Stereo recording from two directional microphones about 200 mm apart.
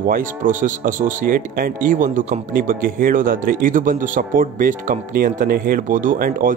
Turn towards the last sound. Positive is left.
turn(degrees=-45)  # may be behind; listen again after turning